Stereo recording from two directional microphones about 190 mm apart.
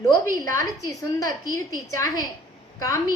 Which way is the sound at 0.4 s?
15° left (ahead or behind).